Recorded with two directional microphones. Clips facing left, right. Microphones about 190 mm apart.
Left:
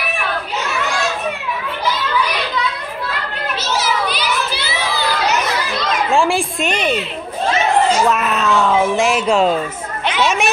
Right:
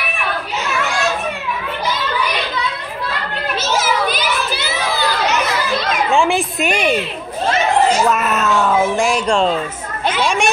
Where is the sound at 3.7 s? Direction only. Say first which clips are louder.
Right 2 dB; 50° right (ahead or behind).